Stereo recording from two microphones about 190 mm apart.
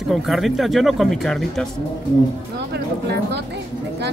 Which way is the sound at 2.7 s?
60° right (ahead or behind).